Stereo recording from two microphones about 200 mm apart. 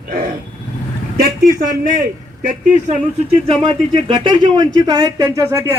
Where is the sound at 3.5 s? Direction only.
25° right (ahead or behind).